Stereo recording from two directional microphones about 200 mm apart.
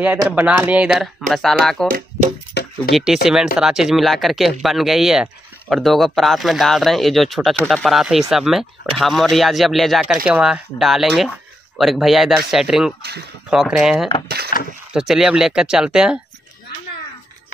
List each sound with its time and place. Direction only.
0.3 s speech: 10° right (ahead or behind)
2.6 s a sound: 55° left (ahead or behind)
2.9 s speech: centre (ahead or behind)
14.2 s speech: 50° right (ahead or behind)
14.9 s speech: 5° right (ahead or behind)